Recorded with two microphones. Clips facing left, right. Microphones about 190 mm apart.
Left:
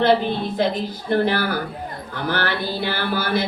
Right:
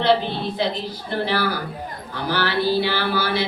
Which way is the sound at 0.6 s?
50° left (ahead or behind).